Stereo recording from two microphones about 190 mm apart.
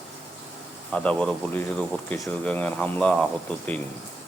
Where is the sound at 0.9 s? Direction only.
5° left (ahead or behind).